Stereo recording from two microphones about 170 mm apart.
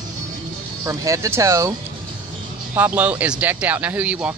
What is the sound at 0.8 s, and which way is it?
Speech, 20° right (ahead or behind).